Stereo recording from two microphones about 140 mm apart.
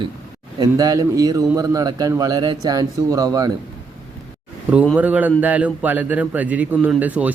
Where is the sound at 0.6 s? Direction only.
25° right (ahead or behind).